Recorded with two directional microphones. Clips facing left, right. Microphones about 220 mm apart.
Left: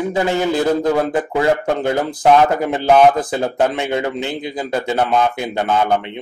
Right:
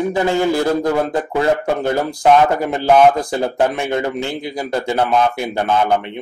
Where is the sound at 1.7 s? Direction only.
20° left (ahead or behind).